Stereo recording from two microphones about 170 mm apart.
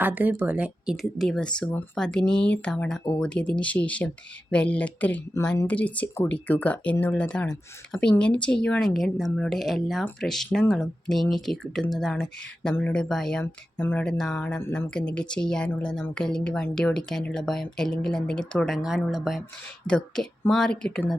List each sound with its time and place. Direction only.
0.0 s a woman's voice: 10° right (ahead or behind)